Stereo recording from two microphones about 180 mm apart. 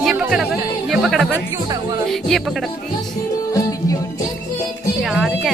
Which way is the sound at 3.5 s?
20° left (ahead or behind).